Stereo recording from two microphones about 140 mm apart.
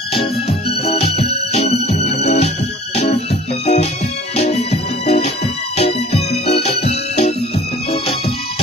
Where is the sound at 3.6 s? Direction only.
55° left (ahead or behind).